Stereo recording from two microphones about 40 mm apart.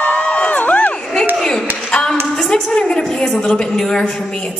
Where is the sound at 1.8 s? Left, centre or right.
Left.